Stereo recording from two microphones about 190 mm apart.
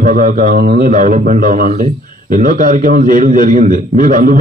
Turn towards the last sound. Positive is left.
turn(degrees=-45)  # may be behind; listen again after turning